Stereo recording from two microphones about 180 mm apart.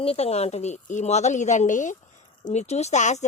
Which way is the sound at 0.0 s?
35° left (ahead or behind).